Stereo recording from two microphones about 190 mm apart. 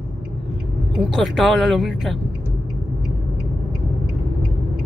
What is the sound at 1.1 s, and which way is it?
Speech, centre (ahead or behind).